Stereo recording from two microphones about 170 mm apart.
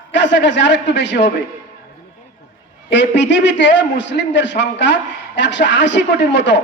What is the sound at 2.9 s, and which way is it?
A man's voice, 90° left.